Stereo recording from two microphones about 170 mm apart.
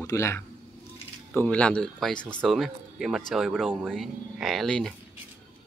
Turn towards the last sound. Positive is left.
turn(degrees=0)  # may be behind; listen again after turning